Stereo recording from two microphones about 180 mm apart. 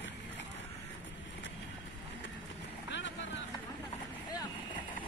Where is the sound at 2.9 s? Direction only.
80° left.